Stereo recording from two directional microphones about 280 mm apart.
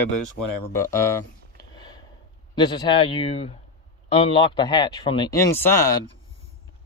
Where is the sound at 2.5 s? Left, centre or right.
Centre.